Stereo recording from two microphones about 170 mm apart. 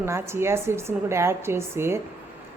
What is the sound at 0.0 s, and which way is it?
A woman's voice, 15° right (ahead or behind).